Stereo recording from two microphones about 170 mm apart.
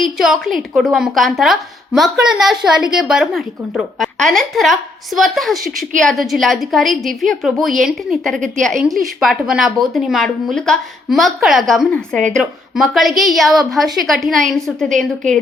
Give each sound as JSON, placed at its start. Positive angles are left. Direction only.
{"t": 0.0, "sound": "a woman's voice", "side_deg": 0}